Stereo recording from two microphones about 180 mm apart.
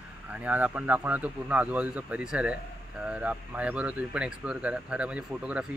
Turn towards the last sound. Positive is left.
turn(degrees=-5)  # may be behind; listen again after turning